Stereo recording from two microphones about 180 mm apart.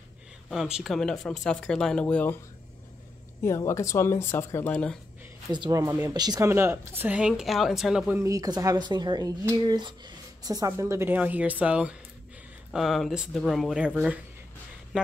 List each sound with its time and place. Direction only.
0.5 s speech: 5° right (ahead or behind)
3.4 s speech: 15° left (ahead or behind)
5.5 s a woman's voice: 20° right (ahead or behind); by 8.2 s 5° right (ahead or behind)
8.2 s speech: 20° right (ahead or behind)